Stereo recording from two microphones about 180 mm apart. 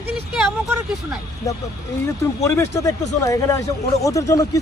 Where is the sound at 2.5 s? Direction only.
15° left (ahead or behind).